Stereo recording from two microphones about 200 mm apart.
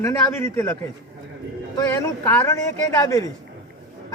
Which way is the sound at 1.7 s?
10° left (ahead or behind).